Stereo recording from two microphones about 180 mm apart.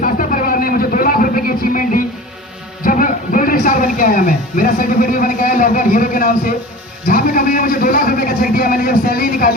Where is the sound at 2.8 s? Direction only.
50° left (ahead or behind).